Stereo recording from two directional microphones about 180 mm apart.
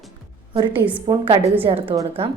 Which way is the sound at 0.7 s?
10° right (ahead or behind).